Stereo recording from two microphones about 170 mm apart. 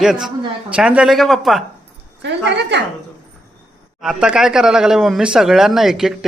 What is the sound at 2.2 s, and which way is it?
Speech, 90° right.